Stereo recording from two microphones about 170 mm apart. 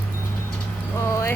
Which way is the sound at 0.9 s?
15° left (ahead or behind).